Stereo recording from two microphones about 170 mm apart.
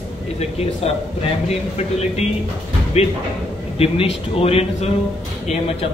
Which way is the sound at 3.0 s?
35° left (ahead or behind).